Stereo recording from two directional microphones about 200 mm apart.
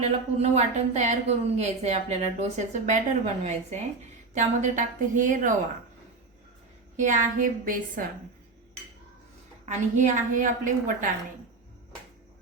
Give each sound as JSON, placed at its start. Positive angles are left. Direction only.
{"t": 0.0, "sound": "a woman's voice", "side_deg": -35}
{"t": 6.9, "sound": "a woman's voice", "side_deg": -40}
{"t": 9.6, "sound": "a woman's voice", "side_deg": -40}